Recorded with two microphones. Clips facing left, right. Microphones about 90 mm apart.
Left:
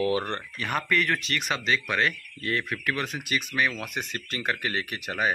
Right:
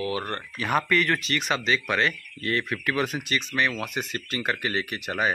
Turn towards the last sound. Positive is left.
turn(degrees=0)  # may be behind; listen again after turning